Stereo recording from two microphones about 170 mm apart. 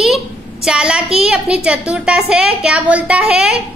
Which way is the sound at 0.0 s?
Centre (ahead or behind).